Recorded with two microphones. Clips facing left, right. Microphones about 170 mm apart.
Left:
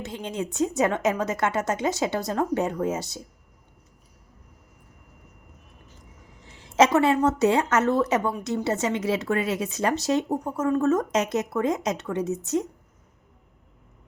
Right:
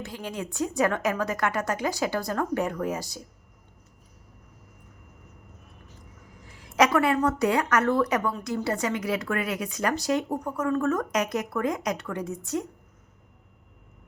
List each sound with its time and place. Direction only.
0.0 s a woman's voice: 25° left (ahead or behind)
6.4 s a woman's voice: 25° left (ahead or behind)